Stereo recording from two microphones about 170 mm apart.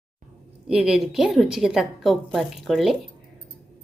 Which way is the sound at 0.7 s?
5° right (ahead or behind).